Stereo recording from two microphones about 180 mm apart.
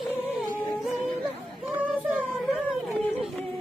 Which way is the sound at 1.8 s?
5° right (ahead or behind).